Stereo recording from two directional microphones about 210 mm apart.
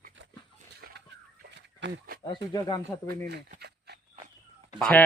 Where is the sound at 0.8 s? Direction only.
45° right (ahead or behind).